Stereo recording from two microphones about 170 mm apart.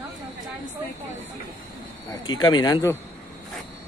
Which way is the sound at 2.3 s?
25° left (ahead or behind).